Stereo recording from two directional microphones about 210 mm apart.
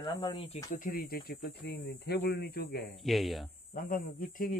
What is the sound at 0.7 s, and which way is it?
Speech, 45° left (ahead or behind).